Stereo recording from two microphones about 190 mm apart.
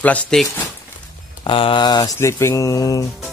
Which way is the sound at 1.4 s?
25° left (ahead or behind).